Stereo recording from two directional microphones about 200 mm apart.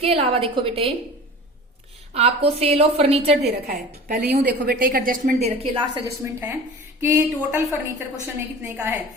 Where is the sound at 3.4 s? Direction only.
55° right (ahead or behind); by 5.9 s 30° right (ahead or behind).